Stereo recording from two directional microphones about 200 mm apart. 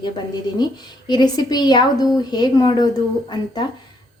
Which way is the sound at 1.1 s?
20° left (ahead or behind).